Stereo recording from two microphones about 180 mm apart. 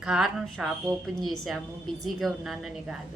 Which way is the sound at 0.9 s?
20° right (ahead or behind).